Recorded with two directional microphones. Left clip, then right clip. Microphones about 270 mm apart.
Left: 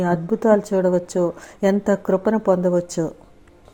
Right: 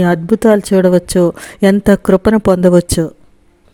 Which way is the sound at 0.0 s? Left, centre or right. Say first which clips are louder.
Right 8 dB; right.